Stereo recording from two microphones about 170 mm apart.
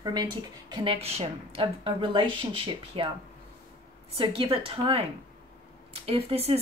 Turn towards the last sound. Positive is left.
turn(degrees=-35)  # may be behind; listen again after turning